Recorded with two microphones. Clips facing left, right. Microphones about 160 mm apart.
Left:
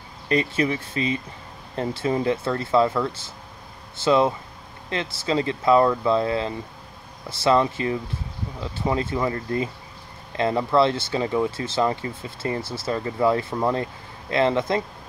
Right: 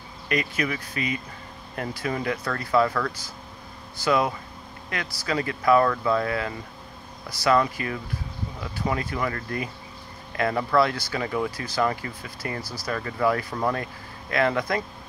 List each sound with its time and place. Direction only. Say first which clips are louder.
0.3 s speech: left 5 dB; 30° left (ahead or behind)